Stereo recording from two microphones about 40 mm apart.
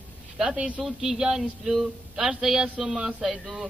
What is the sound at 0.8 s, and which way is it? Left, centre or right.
Speech, centre.